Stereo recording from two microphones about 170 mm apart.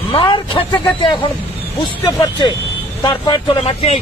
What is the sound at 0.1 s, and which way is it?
Speech, 30° left (ahead or behind).